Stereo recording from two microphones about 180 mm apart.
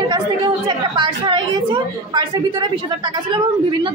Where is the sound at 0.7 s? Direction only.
25° right (ahead or behind).